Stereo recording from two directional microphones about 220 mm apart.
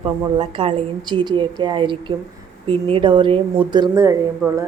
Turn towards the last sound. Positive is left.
turn(degrees=-10)  # may be behind; listen again after turning